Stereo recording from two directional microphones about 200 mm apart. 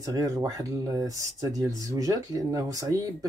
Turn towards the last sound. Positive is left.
turn(degrees=-20)  # may be behind; listen again after turning